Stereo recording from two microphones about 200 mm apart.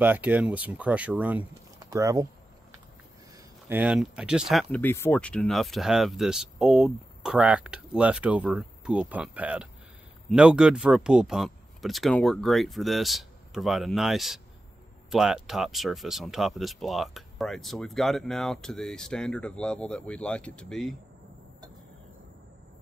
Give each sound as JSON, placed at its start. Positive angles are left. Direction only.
{"t": 0.0, "sound": "speech", "side_deg": -10}
{"t": 1.8, "sound": "a sound", "side_deg": -15}
{"t": 3.6, "sound": "speech", "side_deg": -10}